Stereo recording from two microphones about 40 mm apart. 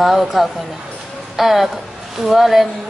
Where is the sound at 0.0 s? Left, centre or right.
Centre.